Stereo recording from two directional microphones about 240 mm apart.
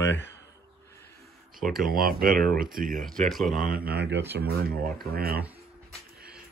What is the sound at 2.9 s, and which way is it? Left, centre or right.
Speech, centre.